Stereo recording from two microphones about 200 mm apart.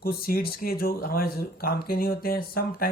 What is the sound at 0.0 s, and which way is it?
Speech, 50° left (ahead or behind).